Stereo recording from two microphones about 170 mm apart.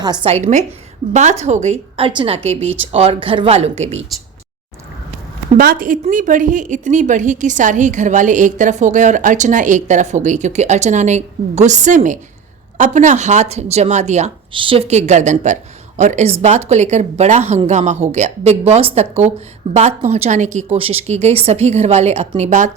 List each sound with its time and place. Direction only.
0.0 s speech: 25° right (ahead or behind)
5.5 s a woman's voice: 55° right (ahead or behind)
14.5 s speech: 30° right (ahead or behind)